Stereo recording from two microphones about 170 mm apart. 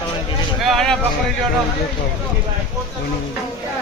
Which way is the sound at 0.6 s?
Centre (ahead or behind).